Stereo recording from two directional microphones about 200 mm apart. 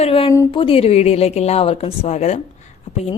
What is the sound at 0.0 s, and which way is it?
Speech, 30° left (ahead or behind).